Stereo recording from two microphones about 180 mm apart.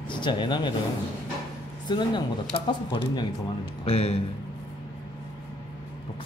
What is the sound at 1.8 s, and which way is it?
A man's voice, 25° left (ahead or behind).